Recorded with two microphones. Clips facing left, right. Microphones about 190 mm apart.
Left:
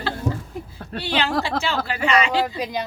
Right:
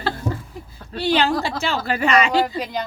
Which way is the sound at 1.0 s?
40° right (ahead or behind).